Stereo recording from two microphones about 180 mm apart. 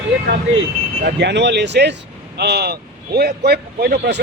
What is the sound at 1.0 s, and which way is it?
A man's voice, 70° right (ahead or behind).